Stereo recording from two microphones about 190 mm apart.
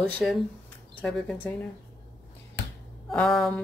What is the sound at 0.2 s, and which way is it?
Speech, centre (ahead or behind).